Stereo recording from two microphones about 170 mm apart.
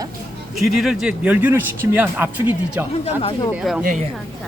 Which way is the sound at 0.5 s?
Centre (ahead or behind).